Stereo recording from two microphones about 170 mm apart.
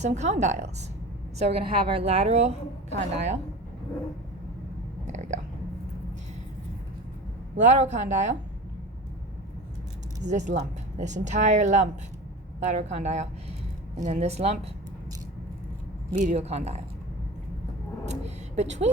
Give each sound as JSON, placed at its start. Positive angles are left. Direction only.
{"t": 0.0, "sound": "a woman's voice", "side_deg": -45}
{"t": 5.0, "sound": "a sound", "side_deg": -45}
{"t": 7.5, "sound": "a woman's voice", "side_deg": -45}
{"t": 10.2, "sound": "a woman's voice", "side_deg": -45}
{"t": 16.1, "sound": "speech", "side_deg": -45}
{"t": 18.1, "sound": "a sound", "side_deg": -40}